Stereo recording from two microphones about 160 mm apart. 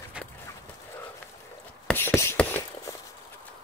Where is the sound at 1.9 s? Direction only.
15° left (ahead or behind).